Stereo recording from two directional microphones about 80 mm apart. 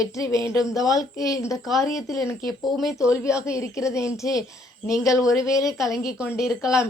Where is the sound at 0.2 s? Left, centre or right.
Left.